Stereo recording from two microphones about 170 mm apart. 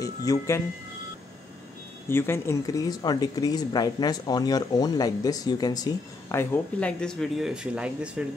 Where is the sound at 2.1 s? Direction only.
15° left (ahead or behind).